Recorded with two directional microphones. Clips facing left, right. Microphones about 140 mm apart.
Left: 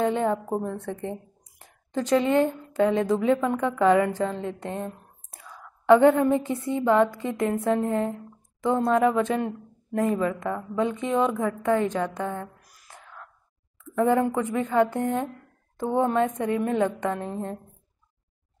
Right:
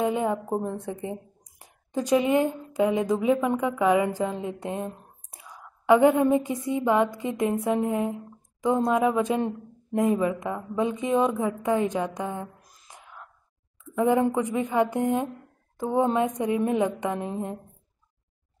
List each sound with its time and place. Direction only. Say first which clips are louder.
0.0 s a woman's voice: left 1 dB; 10° right (ahead or behind)